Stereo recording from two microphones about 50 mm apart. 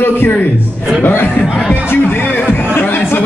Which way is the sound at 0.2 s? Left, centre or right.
Left.